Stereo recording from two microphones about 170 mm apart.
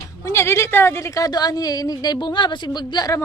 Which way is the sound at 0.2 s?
15° left (ahead or behind).